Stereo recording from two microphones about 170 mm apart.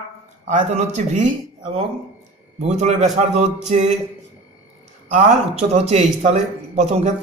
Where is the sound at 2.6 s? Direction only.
40° right (ahead or behind).